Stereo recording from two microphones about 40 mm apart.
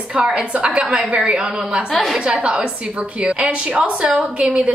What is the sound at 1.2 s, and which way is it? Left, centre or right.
Speech, right.